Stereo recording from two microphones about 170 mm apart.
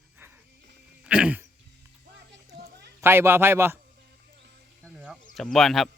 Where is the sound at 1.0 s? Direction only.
5° right (ahead or behind).